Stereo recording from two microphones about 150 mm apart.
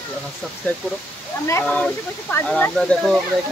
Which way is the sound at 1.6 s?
10° left (ahead or behind).